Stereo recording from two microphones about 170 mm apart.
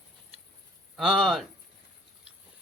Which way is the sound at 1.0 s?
Centre (ahead or behind).